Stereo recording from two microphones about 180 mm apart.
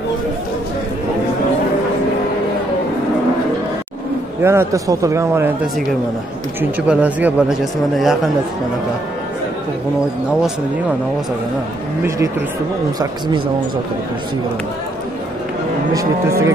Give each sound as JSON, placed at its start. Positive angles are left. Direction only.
{"t": 4.4, "sound": "a man's voice", "side_deg": -15}
{"t": 6.6, "sound": "speech", "side_deg": -10}
{"t": 15.9, "sound": "a man's voice", "side_deg": -15}